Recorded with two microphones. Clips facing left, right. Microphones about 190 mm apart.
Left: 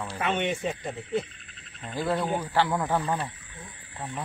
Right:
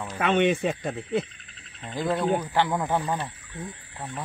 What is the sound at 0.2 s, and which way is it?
Speech, 70° right (ahead or behind).